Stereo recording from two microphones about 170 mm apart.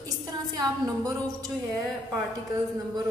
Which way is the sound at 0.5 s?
20° right (ahead or behind).